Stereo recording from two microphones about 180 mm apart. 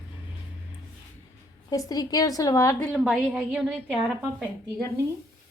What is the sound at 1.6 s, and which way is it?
A woman's voice, 20° left (ahead or behind).